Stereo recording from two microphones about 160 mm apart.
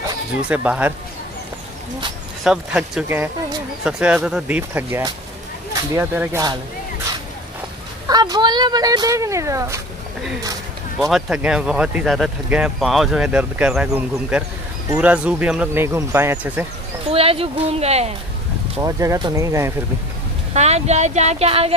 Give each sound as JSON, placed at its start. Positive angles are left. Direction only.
{"t": 0.5, "sound": "speech", "side_deg": -10}
{"t": 2.4, "sound": "speech", "side_deg": -5}
{"t": 8.1, "sound": "speech", "side_deg": -25}
{"t": 11.0, "sound": "speech", "side_deg": 0}
{"t": 17.1, "sound": "speech", "side_deg": -35}
{"t": 18.8, "sound": "speech", "side_deg": -20}
{"t": 20.5, "sound": "speech", "side_deg": -45}